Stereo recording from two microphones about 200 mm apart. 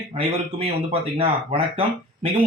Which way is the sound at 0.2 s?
25° right (ahead or behind).